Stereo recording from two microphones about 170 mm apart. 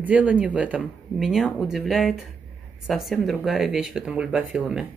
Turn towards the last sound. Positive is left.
turn(degrees=0)  # may be behind; listen again after turning